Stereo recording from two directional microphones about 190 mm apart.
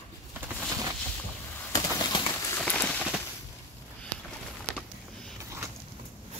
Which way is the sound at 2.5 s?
5° left (ahead or behind).